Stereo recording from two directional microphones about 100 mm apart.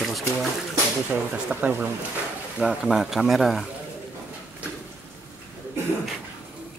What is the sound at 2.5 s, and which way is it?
Speech, 5° right (ahead or behind).